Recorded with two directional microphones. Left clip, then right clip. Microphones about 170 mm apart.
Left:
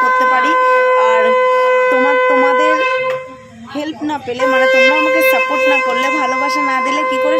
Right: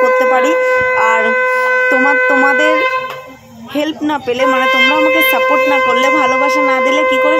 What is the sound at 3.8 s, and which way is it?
Speech, 5° right (ahead or behind).